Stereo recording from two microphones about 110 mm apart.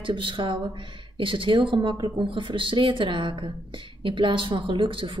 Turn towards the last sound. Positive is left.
turn(degrees=-50)  # may be behind; listen again after turning